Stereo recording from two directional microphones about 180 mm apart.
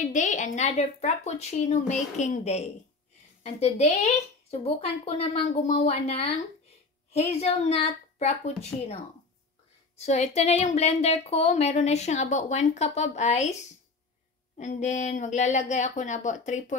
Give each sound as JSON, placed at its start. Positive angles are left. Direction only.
{"t": 0.0, "sound": "a child's voice", "side_deg": 45}
{"t": 8.7, "sound": "speech", "side_deg": 5}
{"t": 9.9, "sound": "speech", "side_deg": 40}
{"t": 14.6, "sound": "speech", "side_deg": 40}